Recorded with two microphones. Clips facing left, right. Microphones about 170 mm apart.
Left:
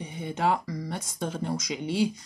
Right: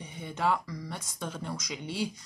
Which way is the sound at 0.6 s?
45° left (ahead or behind).